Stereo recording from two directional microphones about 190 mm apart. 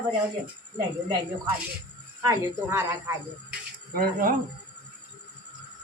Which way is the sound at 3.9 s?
50° right (ahead or behind).